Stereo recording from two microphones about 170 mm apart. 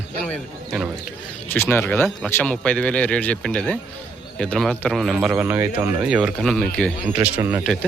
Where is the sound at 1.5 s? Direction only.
10° left (ahead or behind).